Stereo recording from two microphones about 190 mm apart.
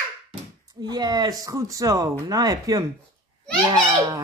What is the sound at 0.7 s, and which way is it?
Speech, 20° right (ahead or behind).